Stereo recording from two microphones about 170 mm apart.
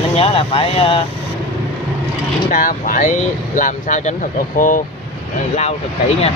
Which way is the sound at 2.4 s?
50° left (ahead or behind).